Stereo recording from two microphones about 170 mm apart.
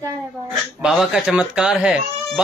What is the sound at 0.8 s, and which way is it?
A man's voice, 5° right (ahead or behind).